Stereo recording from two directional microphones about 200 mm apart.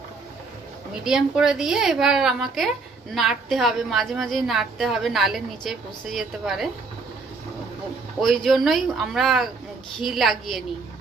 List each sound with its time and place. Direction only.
1.0 s a woman's voice: 5° right (ahead or behind)
8.2 s a woman's voice: centre (ahead or behind)